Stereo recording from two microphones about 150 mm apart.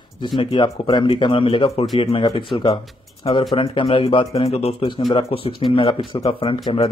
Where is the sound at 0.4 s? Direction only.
35° left (ahead or behind).